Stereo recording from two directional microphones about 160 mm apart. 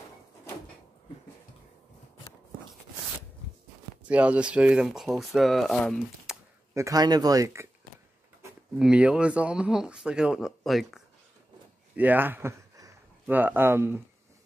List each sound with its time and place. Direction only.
4.1 s speech: 10° right (ahead or behind)
6.7 s speech: 20° right (ahead or behind)
8.7 s speech: 5° right (ahead or behind)